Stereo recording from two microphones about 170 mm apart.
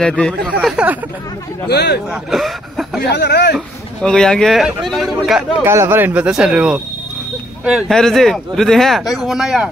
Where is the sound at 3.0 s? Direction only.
75° left (ahead or behind).